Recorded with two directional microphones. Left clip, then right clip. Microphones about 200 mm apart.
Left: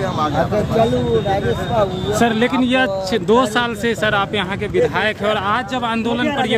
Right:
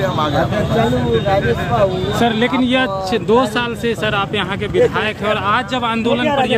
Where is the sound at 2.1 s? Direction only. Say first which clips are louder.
Right 1 dB; 25° left (ahead or behind).